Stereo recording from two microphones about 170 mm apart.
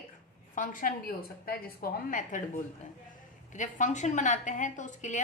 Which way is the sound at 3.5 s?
45° left (ahead or behind).